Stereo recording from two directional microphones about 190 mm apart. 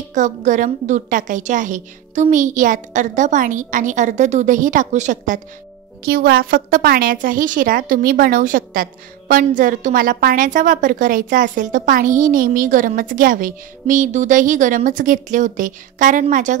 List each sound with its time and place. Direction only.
0.1 s a woman's voice: 40° right (ahead or behind)
6.0 s a woman's voice: 50° right (ahead or behind)